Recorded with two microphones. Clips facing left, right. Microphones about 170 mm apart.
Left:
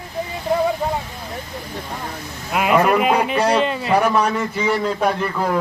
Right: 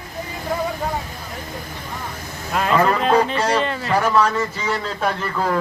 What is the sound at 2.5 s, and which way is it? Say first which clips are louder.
Speech: left 2 dB; 10° left (ahead or behind).